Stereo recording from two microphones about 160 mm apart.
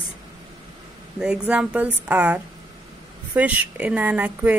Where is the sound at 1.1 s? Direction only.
5° right (ahead or behind).